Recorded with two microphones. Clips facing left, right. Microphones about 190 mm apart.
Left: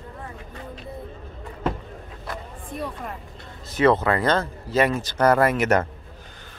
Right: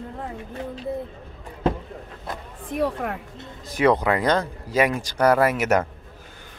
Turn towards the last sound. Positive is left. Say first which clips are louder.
# even
turn(degrees=-10)  # may be behind; listen again after turning